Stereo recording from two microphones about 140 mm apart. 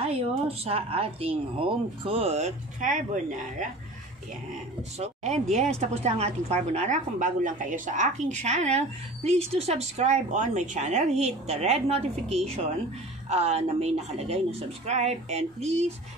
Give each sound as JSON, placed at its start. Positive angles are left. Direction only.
{"t": 0.0, "sound": "speech", "side_deg": -45}
{"t": 4.9, "sound": "speech", "side_deg": -50}
{"t": 7.2, "sound": "speech", "side_deg": -70}